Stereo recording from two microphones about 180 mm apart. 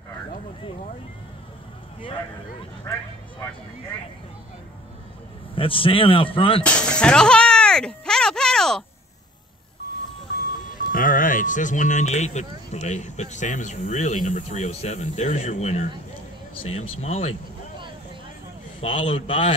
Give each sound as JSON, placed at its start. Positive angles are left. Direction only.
{"t": 5.5, "sound": "speech", "side_deg": 30}
{"t": 6.6, "sound": "music", "side_deg": 5}
{"t": 10.9, "sound": "speech", "side_deg": 50}
{"t": 18.8, "sound": "speech", "side_deg": 35}